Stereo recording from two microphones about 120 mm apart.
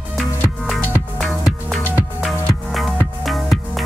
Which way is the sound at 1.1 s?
5° left (ahead or behind).